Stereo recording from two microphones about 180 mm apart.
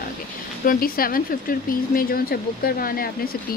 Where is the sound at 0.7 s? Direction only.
55° left (ahead or behind).